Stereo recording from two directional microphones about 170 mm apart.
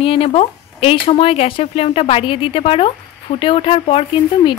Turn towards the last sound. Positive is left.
turn(degrees=35)  # may be behind; listen again after turning